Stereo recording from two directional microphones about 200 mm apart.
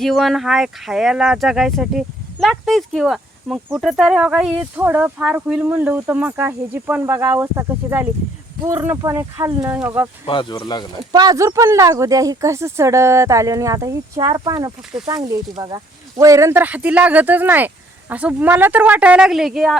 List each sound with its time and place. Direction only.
0.0 s speech: centre (ahead or behind)
10.2 s speech: 25° left (ahead or behind)
11.1 s speech: 20° right (ahead or behind); by 19.8 s centre (ahead or behind)